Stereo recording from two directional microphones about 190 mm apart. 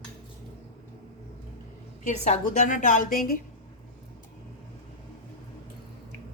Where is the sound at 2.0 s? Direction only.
40° left (ahead or behind).